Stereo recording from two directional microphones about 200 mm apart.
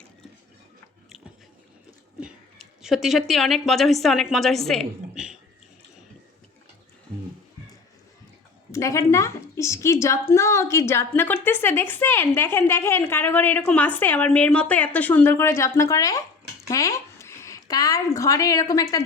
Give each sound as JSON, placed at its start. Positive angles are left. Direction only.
{"t": 2.2, "sound": "a woman's voice", "side_deg": 0}
{"t": 8.7, "sound": "a woman's voice", "side_deg": 15}